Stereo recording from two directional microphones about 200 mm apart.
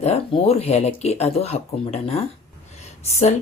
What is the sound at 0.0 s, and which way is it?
Speech, 30° left (ahead or behind).